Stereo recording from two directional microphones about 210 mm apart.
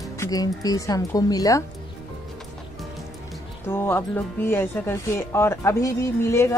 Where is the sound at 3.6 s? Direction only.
10° left (ahead or behind).